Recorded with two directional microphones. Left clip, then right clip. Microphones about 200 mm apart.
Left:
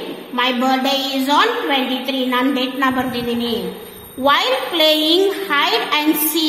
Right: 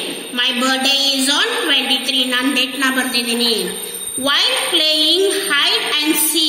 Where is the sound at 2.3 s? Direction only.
55° left (ahead or behind).